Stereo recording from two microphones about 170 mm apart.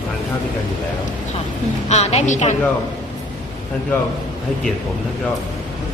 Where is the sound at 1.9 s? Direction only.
40° left (ahead or behind).